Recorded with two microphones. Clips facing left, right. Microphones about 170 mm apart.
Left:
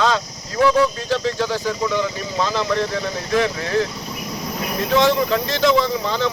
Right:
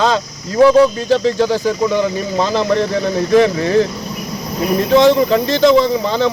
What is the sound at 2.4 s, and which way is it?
Speech, 30° right (ahead or behind).